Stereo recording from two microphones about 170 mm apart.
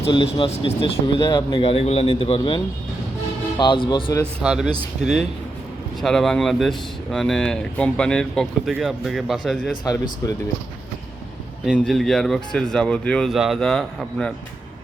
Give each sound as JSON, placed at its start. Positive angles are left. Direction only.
{"t": 0.1, "sound": "a man's voice", "side_deg": 30}
{"t": 3.6, "sound": "speech", "side_deg": 25}
{"t": 4.4, "sound": "speech", "side_deg": -5}
{"t": 6.0, "sound": "speech", "side_deg": 5}
{"t": 9.8, "sound": "speech", "side_deg": 20}
{"t": 11.6, "sound": "speech", "side_deg": 0}